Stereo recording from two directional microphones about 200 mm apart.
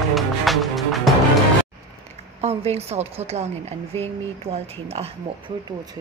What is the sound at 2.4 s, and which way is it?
Speech, 30° right (ahead or behind).